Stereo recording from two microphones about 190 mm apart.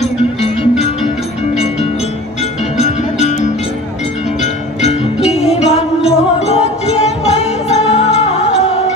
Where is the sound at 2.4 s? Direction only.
35° left (ahead or behind).